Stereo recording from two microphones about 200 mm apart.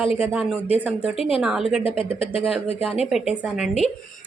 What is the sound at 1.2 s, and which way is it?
Speech, 30° left (ahead or behind).